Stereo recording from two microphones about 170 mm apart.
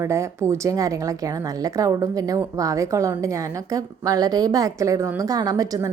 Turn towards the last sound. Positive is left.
turn(degrees=-20)  # may be behind; listen again after turning